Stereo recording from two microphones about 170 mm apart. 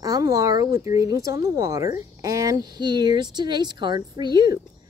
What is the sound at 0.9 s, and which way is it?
Speech, 20° right (ahead or behind).